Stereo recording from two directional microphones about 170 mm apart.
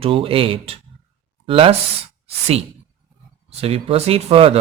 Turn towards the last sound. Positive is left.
turn(degrees=-35)  # may be behind; listen again after turning